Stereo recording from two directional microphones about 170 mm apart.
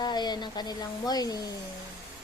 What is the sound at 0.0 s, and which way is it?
Speech, 25° left (ahead or behind).